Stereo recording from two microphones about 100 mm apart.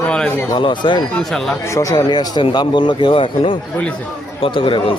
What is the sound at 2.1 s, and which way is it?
A man's voice, 45° left (ahead or behind).